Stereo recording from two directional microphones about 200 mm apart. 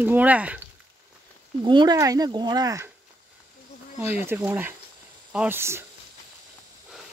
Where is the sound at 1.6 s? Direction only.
20° right (ahead or behind).